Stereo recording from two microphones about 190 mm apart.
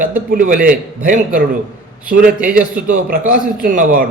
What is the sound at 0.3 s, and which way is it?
A man's voice, 45° right (ahead or behind).